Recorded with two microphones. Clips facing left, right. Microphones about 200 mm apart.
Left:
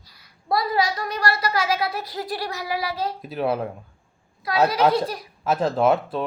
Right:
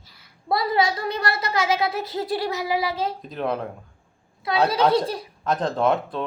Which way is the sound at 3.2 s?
5° left (ahead or behind).